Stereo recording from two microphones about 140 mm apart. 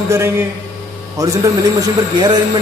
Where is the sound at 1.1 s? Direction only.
25° right (ahead or behind).